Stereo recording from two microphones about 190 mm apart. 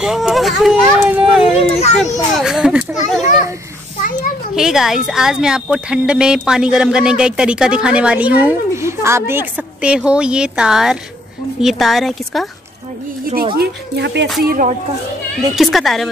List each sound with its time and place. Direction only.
0.0 s speech: centre (ahead or behind)
1.6 s a child's voice: 35° left (ahead or behind)
2.3 s children playing: centre (ahead or behind)
4.6 s speech: centre (ahead or behind)
13.2 s a woman's voice: 50° right (ahead or behind)
13.6 s speech: 65° right (ahead or behind)
14.4 s speech: 50° right (ahead or behind)
15.5 s speech: centre (ahead or behind)